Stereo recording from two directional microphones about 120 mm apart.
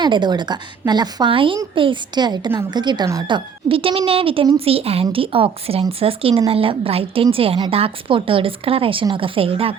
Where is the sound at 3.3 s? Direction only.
50° right (ahead or behind).